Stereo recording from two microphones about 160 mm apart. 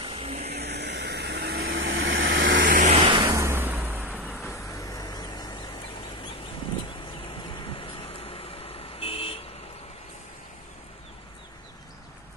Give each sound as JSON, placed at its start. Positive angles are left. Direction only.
{"t": 0.0, "sound": "vehicle", "side_deg": -35}
{"t": 0.6, "sound": "vehicle", "side_deg": -90}
{"t": 2.9, "sound": "vehicle", "side_deg": -35}
{"t": 3.3, "sound": "vehicle", "side_deg": -15}
{"t": 4.2, "sound": "vehicle", "side_deg": 10}
{"t": 7.1, "sound": "vehicle", "side_deg": 30}